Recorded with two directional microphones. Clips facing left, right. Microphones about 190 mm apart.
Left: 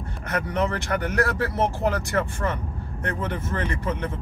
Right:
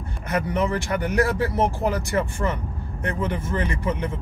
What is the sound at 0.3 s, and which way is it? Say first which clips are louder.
Speech: right 2 dB; 10° right (ahead or behind).